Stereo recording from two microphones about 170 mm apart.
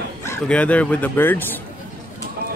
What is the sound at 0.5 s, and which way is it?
Speech, 5° left (ahead or behind).